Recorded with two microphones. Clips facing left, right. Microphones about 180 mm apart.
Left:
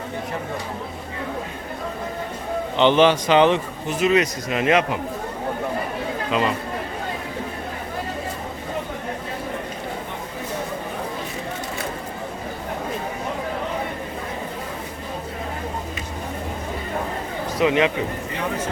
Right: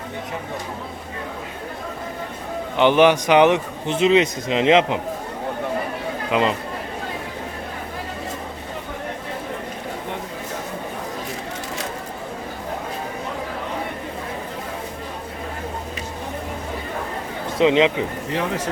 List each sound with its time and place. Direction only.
2.7 s a man's voice: 10° right (ahead or behind)
6.3 s speech: 15° right (ahead or behind)
17.6 s a man's voice: 20° right (ahead or behind)